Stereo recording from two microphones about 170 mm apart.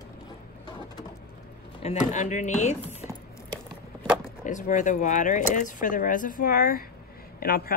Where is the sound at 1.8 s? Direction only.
40° left (ahead or behind).